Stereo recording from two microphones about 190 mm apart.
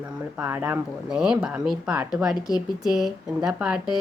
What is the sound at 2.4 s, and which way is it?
Speech, 20° left (ahead or behind).